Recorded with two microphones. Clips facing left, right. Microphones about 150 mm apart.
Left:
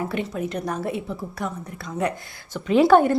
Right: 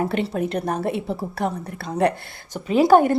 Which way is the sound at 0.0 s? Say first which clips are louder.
Right 4 dB; 60° right (ahead or behind).